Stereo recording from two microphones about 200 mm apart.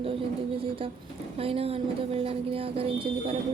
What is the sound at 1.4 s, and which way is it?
A woman's voice, 30° right (ahead or behind).